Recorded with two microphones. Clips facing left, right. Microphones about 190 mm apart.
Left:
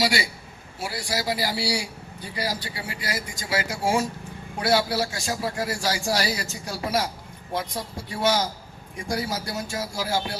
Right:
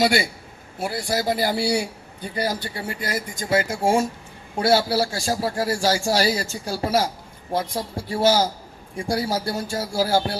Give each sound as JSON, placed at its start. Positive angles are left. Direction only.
{"t": 0.0, "sound": "speech", "side_deg": -55}
{"t": 4.6, "sound": "a man's voice", "side_deg": -30}